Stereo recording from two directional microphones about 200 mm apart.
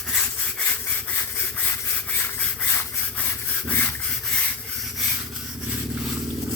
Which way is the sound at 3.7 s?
10° left (ahead or behind).